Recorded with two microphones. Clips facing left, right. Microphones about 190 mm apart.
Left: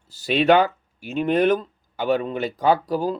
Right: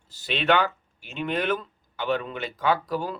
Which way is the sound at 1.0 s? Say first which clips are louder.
Left 8 dB; 40° left (ahead or behind).